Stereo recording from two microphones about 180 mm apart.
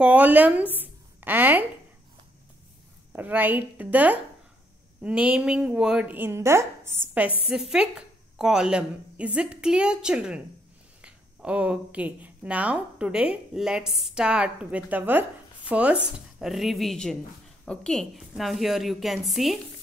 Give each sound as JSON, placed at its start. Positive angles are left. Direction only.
{"t": 0.0, "sound": "a woman's voice", "side_deg": -10}
{"t": 0.7, "sound": "a sound", "side_deg": -10}
{"t": 3.1, "sound": "a woman's voice", "side_deg": -10}
{"t": 8.4, "sound": "speech", "side_deg": -5}